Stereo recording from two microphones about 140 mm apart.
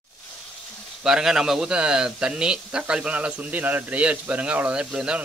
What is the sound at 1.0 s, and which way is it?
Speech, 5° right (ahead or behind).